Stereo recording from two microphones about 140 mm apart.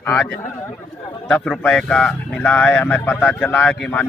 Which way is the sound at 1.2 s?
5° left (ahead or behind).